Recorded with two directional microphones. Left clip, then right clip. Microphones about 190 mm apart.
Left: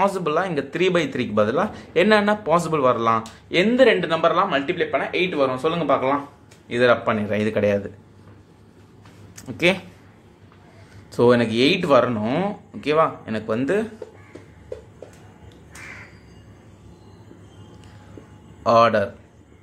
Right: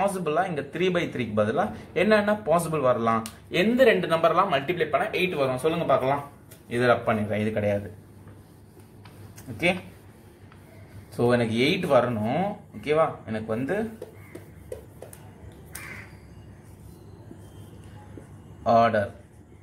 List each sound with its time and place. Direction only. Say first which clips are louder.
0.0 s speech: left 4 dB; 30° left (ahead or behind)
9.3 s a sound: left 5 dB; 35° left (ahead or behind)
11.1 s speech: left 6 dB; 30° left (ahead or behind)
18.6 s speech: left 4 dB; 35° left (ahead or behind)